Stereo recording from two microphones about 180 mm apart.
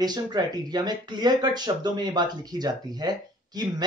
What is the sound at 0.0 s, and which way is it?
Speech, 20° right (ahead or behind).